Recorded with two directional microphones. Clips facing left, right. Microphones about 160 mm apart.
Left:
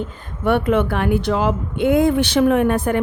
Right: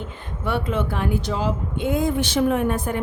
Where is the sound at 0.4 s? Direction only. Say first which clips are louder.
Left 7 dB; 60° left (ahead or behind).